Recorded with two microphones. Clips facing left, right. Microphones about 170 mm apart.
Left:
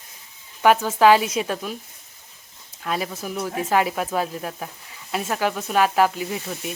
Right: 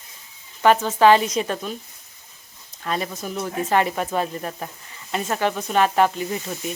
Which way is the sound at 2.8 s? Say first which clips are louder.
Even; 5° left (ahead or behind).